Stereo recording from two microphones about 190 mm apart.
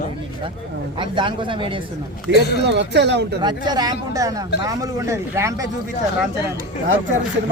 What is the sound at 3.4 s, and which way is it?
Speech, 20° right (ahead or behind).